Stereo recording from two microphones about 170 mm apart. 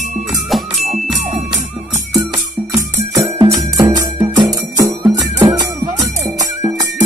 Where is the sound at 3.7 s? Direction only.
20° right (ahead or behind).